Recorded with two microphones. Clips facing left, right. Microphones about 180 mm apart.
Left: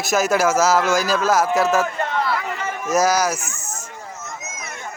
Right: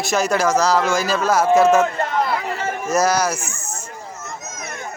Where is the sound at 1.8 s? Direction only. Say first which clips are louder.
Right 2 dB; 30° right (ahead or behind).